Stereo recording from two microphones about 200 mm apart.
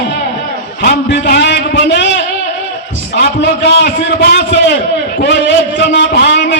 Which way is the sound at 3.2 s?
60° left (ahead or behind).